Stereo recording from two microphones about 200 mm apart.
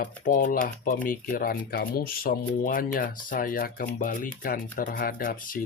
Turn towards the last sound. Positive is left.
turn(degrees=45)  # may be behind; listen again after turning